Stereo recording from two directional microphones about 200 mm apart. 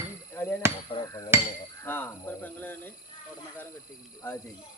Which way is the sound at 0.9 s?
20° left (ahead or behind).